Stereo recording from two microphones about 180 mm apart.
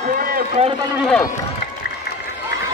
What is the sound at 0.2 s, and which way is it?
Run, 50° right (ahead or behind).